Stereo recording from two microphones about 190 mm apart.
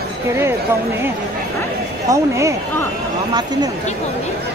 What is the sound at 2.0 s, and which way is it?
Speech, 15° right (ahead or behind).